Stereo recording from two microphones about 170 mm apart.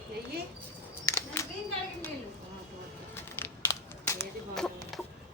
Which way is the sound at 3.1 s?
15° left (ahead or behind).